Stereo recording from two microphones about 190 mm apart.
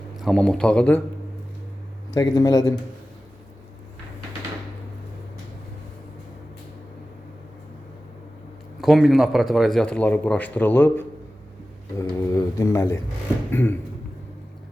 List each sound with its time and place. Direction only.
0.2 s speech: centre (ahead or behind)
2.1 s speech: 20° left (ahead or behind)
8.8 s speech: centre (ahead or behind)